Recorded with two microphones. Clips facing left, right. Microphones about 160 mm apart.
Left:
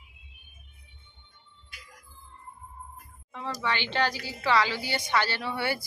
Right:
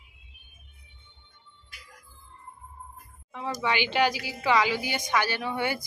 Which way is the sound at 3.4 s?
15° right (ahead or behind).